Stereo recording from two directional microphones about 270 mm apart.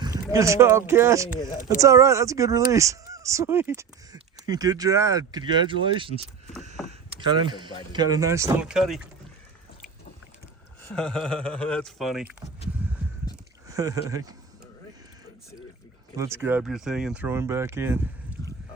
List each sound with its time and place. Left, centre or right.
0.0 s speech: centre
7.4 s speech: centre
10.8 s speech: centre
13.7 s speech: centre
16.1 s speech: centre